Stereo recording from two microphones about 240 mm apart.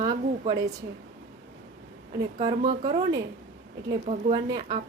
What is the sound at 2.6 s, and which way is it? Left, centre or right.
A woman's voice, right.